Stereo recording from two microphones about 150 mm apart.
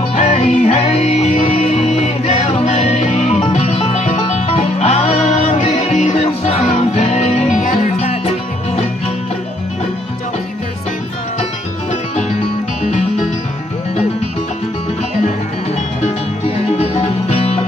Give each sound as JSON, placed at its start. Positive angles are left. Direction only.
{"t": 0.1, "sound": "music", "side_deg": 45}
{"t": 16.7, "sound": "music", "side_deg": 45}